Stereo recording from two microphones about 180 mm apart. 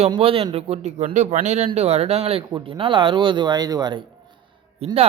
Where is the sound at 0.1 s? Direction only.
30° right (ahead or behind).